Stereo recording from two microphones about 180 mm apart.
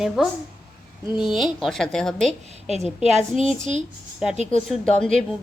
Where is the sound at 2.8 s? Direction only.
35° left (ahead or behind).